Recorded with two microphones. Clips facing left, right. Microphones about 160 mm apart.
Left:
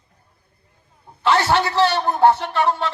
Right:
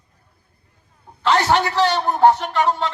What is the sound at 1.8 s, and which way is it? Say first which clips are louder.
Speech: even; 15° right (ahead or behind).